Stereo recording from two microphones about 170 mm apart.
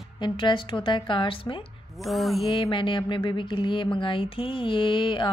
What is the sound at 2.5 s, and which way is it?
Speech, 30° left (ahead or behind).